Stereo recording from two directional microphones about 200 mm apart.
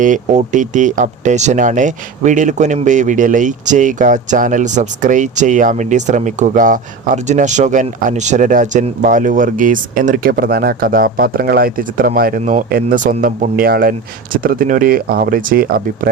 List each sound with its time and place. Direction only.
0.0 s speech: 40° right (ahead or behind)